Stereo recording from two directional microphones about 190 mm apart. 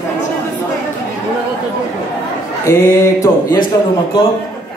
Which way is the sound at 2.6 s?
15° left (ahead or behind).